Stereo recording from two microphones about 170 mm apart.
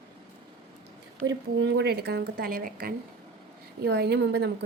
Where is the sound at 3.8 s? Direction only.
75° right (ahead or behind).